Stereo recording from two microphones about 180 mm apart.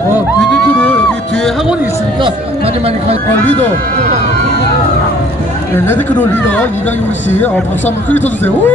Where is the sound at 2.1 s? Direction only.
30° right (ahead or behind).